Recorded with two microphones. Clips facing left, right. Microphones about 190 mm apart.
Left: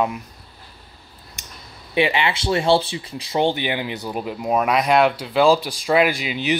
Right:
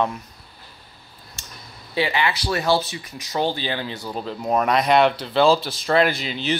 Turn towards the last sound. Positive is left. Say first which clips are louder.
# left 2 dB
turn(degrees=15)  # may be behind; listen again after turning